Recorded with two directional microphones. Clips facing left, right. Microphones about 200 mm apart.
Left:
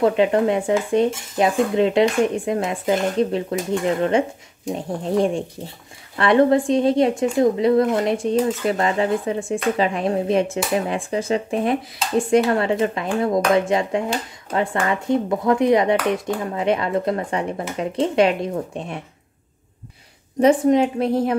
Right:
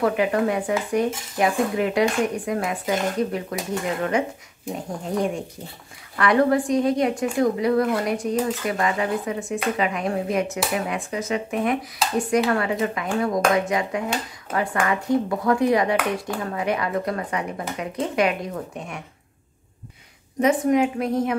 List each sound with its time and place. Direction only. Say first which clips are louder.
0.0 s a woman's voice: left 4 dB; 25° left (ahead or behind)
20.3 s a woman's voice: left 4 dB; 30° left (ahead or behind)